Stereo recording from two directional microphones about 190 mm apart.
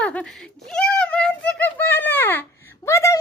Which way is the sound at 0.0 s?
5° left (ahead or behind).